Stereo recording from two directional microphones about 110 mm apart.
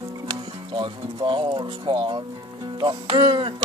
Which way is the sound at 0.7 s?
50° right (ahead or behind).